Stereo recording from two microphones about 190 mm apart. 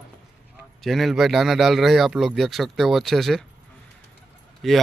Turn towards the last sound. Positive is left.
turn(degrees=0)  # may be behind; listen again after turning